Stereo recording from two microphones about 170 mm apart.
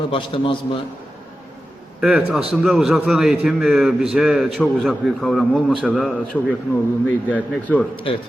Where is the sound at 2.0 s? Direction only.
5° right (ahead or behind).